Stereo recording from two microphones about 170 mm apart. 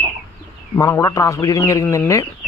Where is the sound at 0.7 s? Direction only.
20° left (ahead or behind).